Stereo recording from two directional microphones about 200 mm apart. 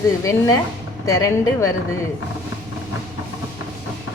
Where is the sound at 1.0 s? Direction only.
15° left (ahead or behind).